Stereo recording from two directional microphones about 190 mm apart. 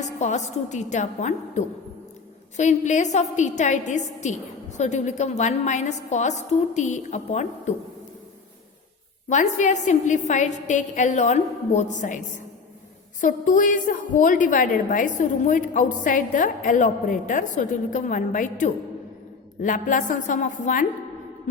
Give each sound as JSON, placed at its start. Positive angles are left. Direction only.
{"t": 0.2, "sound": "a woman's voice", "side_deg": 35}
{"t": 9.3, "sound": "a woman's voice", "side_deg": 40}
{"t": 13.2, "sound": "a woman's voice", "side_deg": 45}